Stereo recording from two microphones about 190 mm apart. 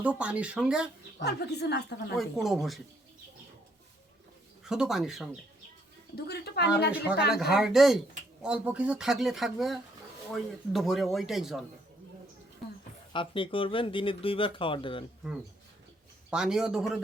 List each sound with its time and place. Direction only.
0.0 s speech: 5° right (ahead or behind)
1.2 s speech: 60° left (ahead or behind)
2.1 s speech: centre (ahead or behind)
4.6 s speech: 5° right (ahead or behind)
6.1 s speech: 55° left (ahead or behind)
7.3 s speech: centre (ahead or behind)
13.1 s speech: 25° left (ahead or behind)
16.3 s speech: 5° right (ahead or behind)